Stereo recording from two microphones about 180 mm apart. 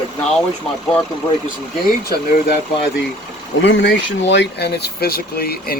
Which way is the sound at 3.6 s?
80° left.